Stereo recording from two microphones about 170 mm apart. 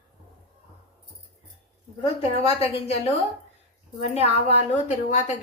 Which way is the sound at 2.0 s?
35° left (ahead or behind).